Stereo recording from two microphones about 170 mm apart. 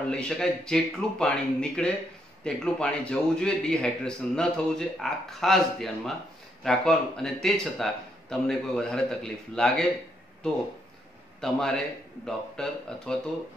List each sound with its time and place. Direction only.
0.1 s a man's voice: 5° left (ahead or behind)
11.4 s a man's voice: centre (ahead or behind)